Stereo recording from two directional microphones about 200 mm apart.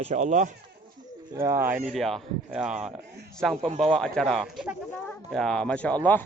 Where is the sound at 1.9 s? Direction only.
Centre (ahead or behind).